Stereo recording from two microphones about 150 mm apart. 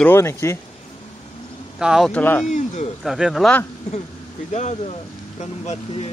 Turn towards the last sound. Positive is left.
turn(degrees=45)  # may be behind; listen again after turning